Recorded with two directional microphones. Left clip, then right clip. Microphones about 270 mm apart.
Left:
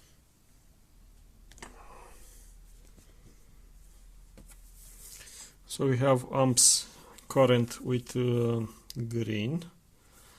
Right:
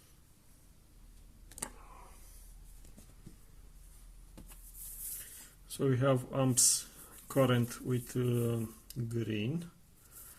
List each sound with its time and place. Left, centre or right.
5.6 s speech: left